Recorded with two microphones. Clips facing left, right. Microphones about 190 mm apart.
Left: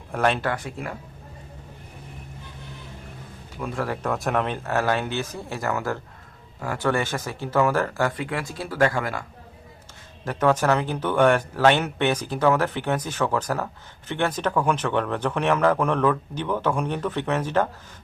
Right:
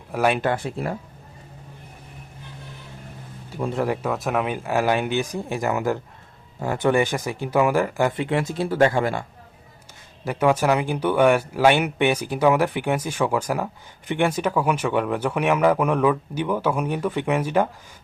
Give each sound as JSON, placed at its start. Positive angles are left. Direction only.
{"t": 0.1, "sound": "speech", "side_deg": -10}
{"t": 0.4, "sound": "speech", "side_deg": -30}
{"t": 3.6, "sound": "speech", "side_deg": -25}
{"t": 4.0, "sound": "speech", "side_deg": -5}
{"t": 10.2, "sound": "speech", "side_deg": -10}